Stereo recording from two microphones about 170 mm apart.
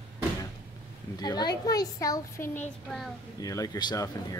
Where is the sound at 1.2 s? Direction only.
25° left (ahead or behind).